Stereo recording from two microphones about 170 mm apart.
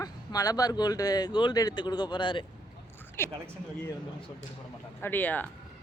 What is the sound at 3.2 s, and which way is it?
Speech, 15° left (ahead or behind).